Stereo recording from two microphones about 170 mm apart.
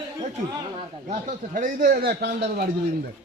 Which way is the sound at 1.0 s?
45° right (ahead or behind).